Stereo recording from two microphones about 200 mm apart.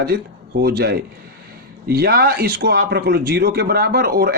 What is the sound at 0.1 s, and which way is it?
A man's voice, 55° right (ahead or behind).